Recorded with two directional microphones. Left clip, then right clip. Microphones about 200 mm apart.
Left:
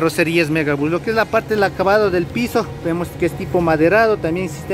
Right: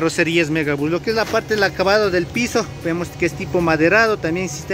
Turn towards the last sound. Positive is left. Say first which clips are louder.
# left 1 dB
turn(degrees=5)  # may be behind; listen again after turning